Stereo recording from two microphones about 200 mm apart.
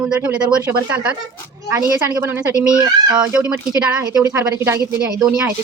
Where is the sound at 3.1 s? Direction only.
5° right (ahead or behind).